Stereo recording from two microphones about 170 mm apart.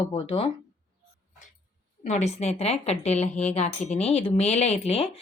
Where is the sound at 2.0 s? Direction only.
40° left (ahead or behind).